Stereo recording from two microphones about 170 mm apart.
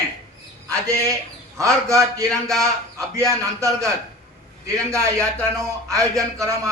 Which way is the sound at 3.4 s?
15° right (ahead or behind).